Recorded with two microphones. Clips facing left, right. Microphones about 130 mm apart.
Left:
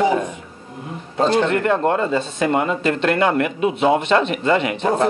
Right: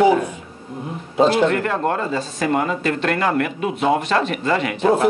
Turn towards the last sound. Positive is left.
turn(degrees=-5)  # may be behind; listen again after turning